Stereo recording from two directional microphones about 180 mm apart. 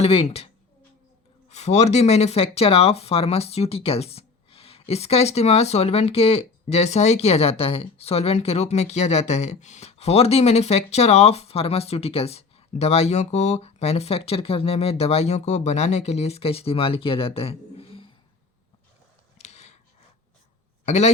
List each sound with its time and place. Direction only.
0.0 s speech: 35° left (ahead or behind)
19.4 s a sound: 35° left (ahead or behind)
20.8 s a man's voice: 40° left (ahead or behind)